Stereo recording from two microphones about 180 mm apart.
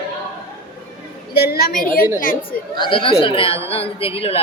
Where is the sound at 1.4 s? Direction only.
60° left (ahead or behind).